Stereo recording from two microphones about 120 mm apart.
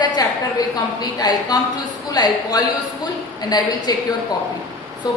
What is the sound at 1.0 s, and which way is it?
A woman's voice, 35° left (ahead or behind).